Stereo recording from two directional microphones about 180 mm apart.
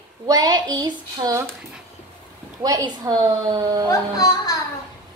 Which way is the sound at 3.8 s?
20° left (ahead or behind).